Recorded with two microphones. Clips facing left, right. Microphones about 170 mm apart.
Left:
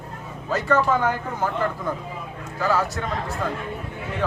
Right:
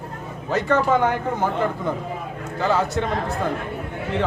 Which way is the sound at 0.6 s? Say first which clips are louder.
Right 2 dB; 20° right (ahead or behind).